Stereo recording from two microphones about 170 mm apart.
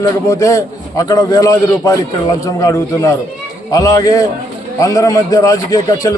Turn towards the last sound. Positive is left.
turn(degrees=20)  # may be behind; listen again after turning